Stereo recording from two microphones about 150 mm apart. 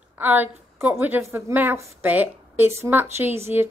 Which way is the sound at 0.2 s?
10° right (ahead or behind).